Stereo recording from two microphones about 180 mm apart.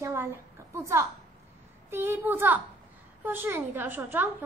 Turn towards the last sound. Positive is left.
turn(degrees=-10)  # may be behind; listen again after turning